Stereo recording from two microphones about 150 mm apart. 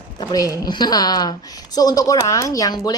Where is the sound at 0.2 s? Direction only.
25° left (ahead or behind).